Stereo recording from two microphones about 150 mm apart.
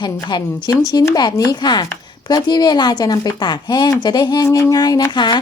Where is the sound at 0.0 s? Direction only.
30° left (ahead or behind).